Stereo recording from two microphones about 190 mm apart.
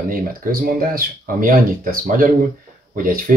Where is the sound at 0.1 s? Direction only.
50° right (ahead or behind).